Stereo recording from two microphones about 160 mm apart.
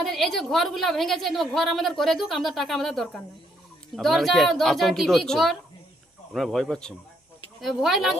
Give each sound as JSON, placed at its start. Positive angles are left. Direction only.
{"t": 0.0, "sound": "a woman's voice", "side_deg": 0}